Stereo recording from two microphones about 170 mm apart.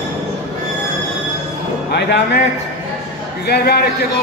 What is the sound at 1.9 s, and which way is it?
Speech, 80° left.